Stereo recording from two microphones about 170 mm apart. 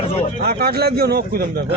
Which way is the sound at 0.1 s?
35° left (ahead or behind).